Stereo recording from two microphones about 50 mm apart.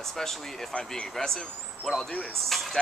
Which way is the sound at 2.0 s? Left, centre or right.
Left.